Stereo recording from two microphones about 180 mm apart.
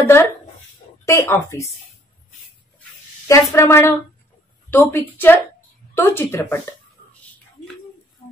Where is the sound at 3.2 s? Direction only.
15° left (ahead or behind).